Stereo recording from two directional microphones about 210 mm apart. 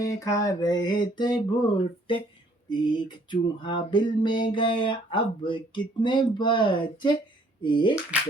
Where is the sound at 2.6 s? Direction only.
20° left (ahead or behind).